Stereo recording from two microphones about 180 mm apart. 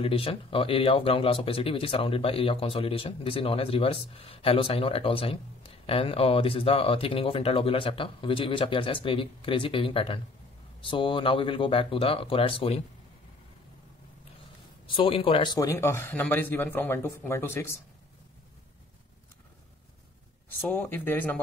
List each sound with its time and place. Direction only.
0.0 s speech: 30° left (ahead or behind)
14.9 s speech: 30° left (ahead or behind); by 17.7 s 15° left (ahead or behind)
20.4 s speech: 10° left (ahead or behind)